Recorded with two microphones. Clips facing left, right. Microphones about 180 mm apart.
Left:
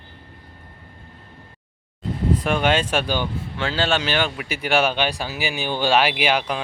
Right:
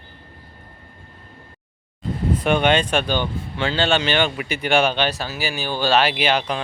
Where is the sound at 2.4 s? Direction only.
Centre (ahead or behind).